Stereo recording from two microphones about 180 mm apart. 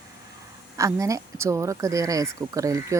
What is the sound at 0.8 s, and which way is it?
Speech, 20° right (ahead or behind).